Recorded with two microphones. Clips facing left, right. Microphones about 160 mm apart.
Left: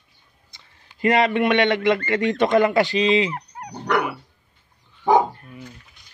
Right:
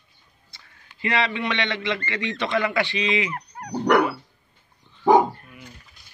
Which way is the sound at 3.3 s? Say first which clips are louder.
Right 3 dB; 15° left (ahead or behind).